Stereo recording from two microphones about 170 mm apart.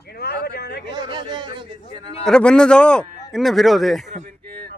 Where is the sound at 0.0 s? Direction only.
70° left (ahead or behind).